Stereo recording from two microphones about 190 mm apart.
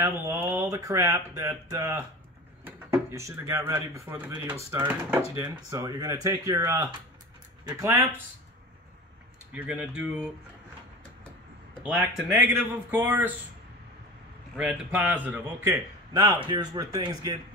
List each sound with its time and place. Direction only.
0.0 s speech: 15° right (ahead or behind)
9.5 s speech: 5° right (ahead or behind)
11.8 s speech: 5° right (ahead or behind)
14.6 s a man's voice: 5° right (ahead or behind)